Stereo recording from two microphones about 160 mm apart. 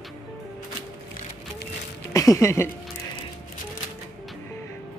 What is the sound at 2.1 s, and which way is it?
Speech, 20° left (ahead or behind).